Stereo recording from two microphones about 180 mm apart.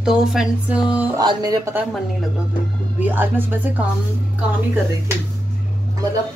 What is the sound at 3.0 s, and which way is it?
Speech, 10° right (ahead or behind).